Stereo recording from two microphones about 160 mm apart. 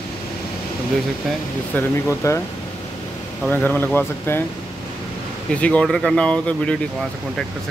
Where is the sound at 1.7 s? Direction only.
15° left (ahead or behind).